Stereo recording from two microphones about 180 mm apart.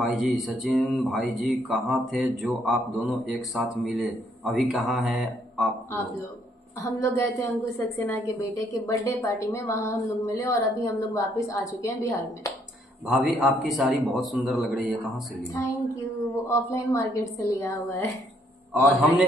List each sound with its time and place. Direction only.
0.0 s speech: centre (ahead or behind)
6.8 s a woman's voice: 20° left (ahead or behind)
13.0 s speech: 5° right (ahead or behind)
15.5 s a woman's voice: 15° left (ahead or behind)